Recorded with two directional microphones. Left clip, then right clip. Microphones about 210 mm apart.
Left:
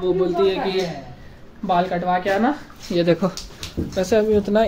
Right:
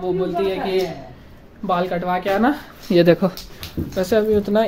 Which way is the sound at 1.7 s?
5° right (ahead or behind).